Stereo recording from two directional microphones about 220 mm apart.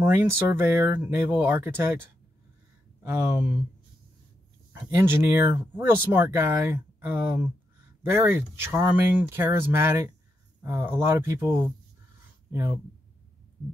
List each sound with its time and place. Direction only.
0.0 s speech: 10° right (ahead or behind)
4.9 s speech: 10° right (ahead or behind)